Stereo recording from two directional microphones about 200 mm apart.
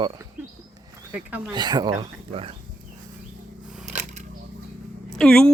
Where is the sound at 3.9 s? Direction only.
35° right (ahead or behind).